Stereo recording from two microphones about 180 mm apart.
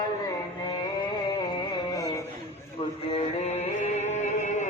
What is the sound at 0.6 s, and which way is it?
Music, 25° left (ahead or behind).